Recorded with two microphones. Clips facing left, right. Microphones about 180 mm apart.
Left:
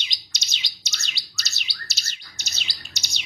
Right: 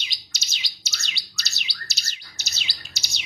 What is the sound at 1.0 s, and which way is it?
Bird, centre (ahead or behind).